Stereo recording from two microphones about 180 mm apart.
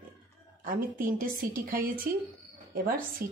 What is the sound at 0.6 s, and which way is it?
Speech, 50° right (ahead or behind).